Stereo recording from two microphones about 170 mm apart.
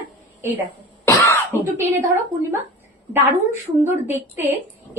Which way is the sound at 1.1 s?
15° left (ahead or behind).